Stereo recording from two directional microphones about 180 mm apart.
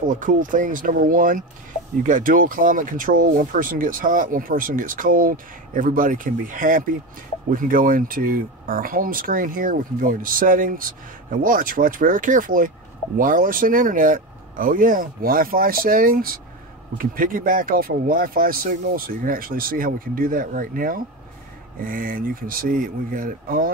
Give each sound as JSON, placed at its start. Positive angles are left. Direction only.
{"t": 0.2, "sound": "speech", "side_deg": -45}